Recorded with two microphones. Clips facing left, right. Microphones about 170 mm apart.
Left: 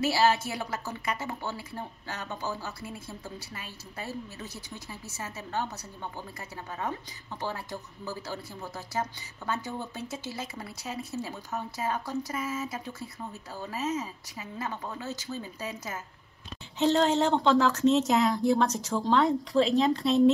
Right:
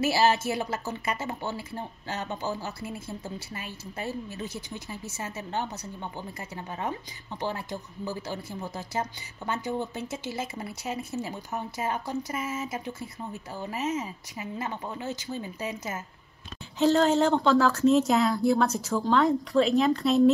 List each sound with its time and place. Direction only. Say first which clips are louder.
0.0 s a woman's voice: right 1 dB; 25° right (ahead or behind)
16.7 s speech: right 2 dB; 25° left (ahead or behind)
18.7 s speech: right 2 dB; 10° right (ahead or behind)
19.0 s speech: right 1 dB; 25° left (ahead or behind)